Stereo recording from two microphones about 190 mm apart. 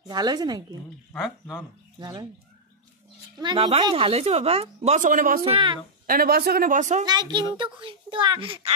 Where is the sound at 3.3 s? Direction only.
25° right (ahead or behind); by 5.4 s 45° right (ahead or behind).